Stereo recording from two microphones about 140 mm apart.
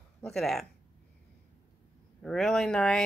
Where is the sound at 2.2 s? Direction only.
5° left (ahead or behind).